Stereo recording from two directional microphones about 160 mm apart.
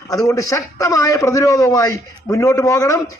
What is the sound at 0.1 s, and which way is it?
A man's voice, 20° left (ahead or behind).